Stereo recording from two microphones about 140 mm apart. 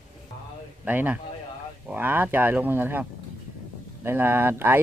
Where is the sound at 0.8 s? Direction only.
10° right (ahead or behind).